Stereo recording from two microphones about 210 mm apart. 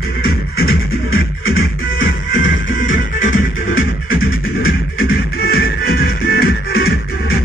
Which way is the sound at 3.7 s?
45° left (ahead or behind).